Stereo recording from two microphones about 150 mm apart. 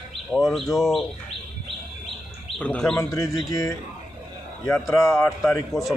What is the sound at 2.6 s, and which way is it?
Speech, 5° left (ahead or behind).